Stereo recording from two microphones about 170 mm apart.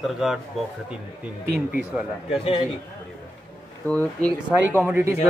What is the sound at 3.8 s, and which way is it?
Speech, 10° left (ahead or behind).